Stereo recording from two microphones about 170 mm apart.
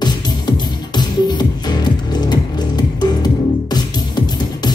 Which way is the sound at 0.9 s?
25° left (ahead or behind).